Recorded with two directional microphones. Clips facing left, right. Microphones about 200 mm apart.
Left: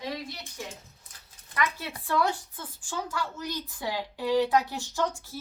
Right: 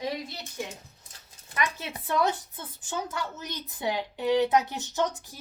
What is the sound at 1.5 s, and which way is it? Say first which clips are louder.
Speech: left 1 dB; 20° right (ahead or behind).